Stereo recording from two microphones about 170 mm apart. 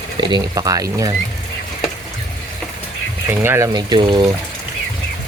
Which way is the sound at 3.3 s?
15° right (ahead or behind).